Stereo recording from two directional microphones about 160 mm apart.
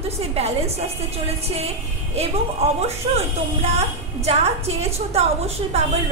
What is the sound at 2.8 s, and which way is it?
A woman's voice, 40° right (ahead or behind).